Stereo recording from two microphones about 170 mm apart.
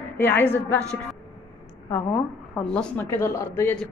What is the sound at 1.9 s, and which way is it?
A woman's voice, 5° left (ahead or behind).